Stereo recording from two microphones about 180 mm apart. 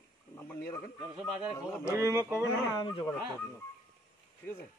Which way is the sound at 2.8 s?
30° left (ahead or behind).